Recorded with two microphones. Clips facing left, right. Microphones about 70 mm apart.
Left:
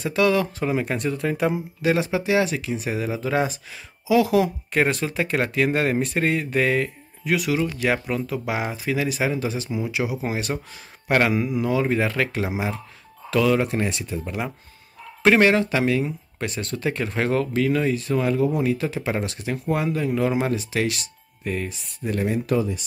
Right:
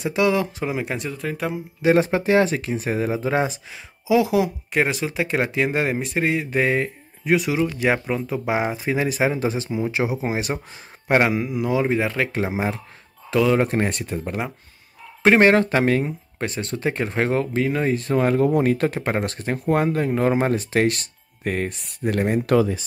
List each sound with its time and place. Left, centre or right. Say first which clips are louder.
0.0 s speech: even; centre
1.8 s speech: right 5 dB; right
2.0 s speech: right 3 dB; right; by 6.6 s centre
6.6 s speech: right 1 dB; right
12.3 s speech: right 2 dB; right
13.6 s speech: right 3 dB; right
16.1 s speech: right 2 dB; right